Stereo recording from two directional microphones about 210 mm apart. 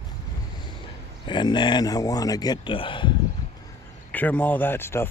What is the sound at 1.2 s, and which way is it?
Speech, 20° left (ahead or behind).